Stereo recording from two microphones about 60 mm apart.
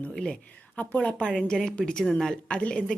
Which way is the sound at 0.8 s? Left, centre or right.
Left.